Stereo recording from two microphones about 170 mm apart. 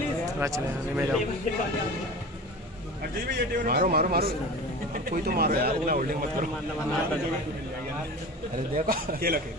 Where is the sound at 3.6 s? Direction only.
60° right (ahead or behind).